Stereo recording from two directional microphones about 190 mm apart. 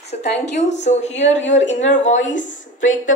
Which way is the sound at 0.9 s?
35° left (ahead or behind).